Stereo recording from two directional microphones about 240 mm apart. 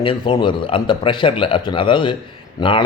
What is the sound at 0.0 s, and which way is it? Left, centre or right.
Speech, left.